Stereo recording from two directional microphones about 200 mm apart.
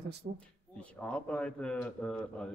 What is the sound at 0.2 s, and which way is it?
Speech, 55° right (ahead or behind).